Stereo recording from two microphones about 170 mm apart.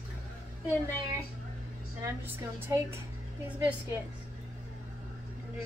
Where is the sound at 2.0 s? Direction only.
15° right (ahead or behind).